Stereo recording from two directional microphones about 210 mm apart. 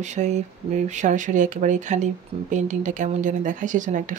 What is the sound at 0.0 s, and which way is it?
Speech, 35° right (ahead or behind).